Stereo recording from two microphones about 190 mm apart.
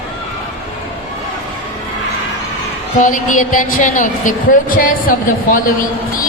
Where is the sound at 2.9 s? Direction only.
45° left (ahead or behind).